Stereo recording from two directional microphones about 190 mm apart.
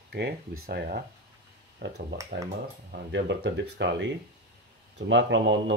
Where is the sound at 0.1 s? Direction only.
60° right (ahead or behind).